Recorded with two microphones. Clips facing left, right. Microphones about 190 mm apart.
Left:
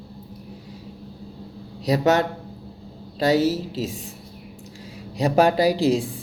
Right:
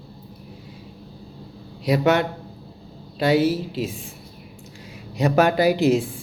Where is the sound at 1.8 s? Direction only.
40° left (ahead or behind).